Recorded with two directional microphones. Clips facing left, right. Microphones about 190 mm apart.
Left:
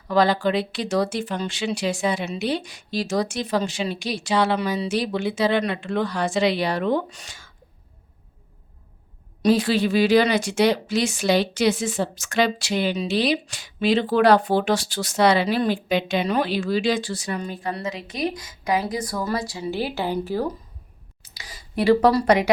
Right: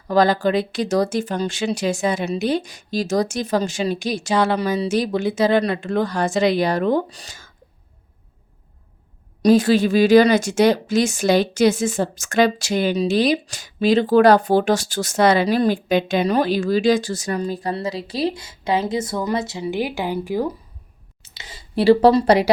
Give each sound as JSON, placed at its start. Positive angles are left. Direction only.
{"t": 0.1, "sound": "speech", "side_deg": -45}
{"t": 9.4, "sound": "speech", "side_deg": -45}
{"t": 21.2, "sound": "speech", "side_deg": -25}